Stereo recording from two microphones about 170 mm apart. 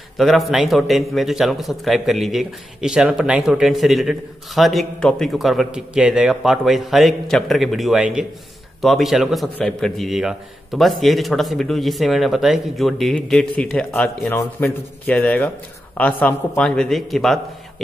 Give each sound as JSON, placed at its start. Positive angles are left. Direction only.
{"t": 0.2, "sound": "a man's voice", "side_deg": 0}